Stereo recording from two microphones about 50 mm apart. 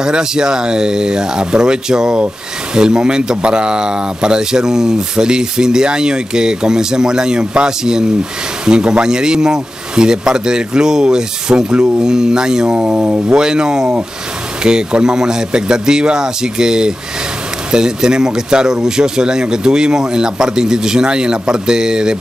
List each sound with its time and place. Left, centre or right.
0.0 s speech: centre
12.7 s speech: right